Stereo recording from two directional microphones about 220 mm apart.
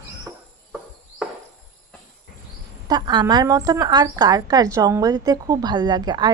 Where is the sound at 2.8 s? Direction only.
20° right (ahead or behind).